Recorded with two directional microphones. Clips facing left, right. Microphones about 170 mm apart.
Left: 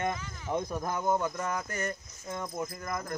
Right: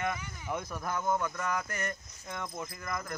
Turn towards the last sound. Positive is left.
turn(degrees=20)  # may be behind; listen again after turning